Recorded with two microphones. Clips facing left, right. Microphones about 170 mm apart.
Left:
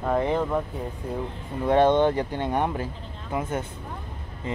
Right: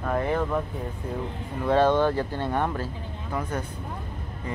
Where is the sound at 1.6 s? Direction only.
20° left (ahead or behind).